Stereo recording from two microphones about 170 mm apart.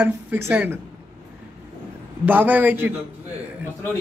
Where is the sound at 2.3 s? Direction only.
10° right (ahead or behind).